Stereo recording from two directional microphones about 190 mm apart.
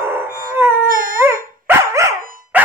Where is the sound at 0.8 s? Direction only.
45° right (ahead or behind).